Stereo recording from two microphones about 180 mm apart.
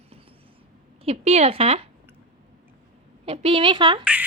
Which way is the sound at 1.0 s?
35° right (ahead or behind).